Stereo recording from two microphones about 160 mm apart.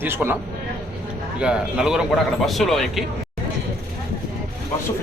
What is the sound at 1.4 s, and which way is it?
A man's voice, 5° right (ahead or behind).